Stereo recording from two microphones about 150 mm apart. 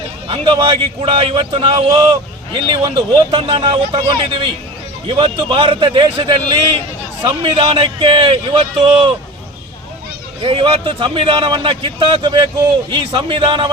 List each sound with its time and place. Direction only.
0.3 s speech: 35° right (ahead or behind)
10.4 s speech: 35° right (ahead or behind)